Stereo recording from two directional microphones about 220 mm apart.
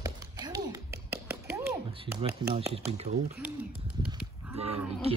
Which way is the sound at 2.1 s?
25° right (ahead or behind).